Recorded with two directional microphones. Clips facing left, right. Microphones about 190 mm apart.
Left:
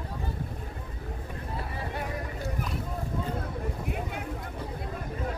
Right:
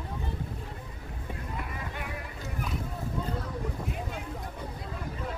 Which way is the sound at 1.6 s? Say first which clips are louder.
Left 3 dB; 35° left (ahead or behind).